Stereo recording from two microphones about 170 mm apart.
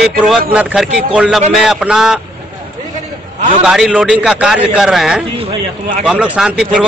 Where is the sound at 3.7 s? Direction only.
5° right (ahead or behind).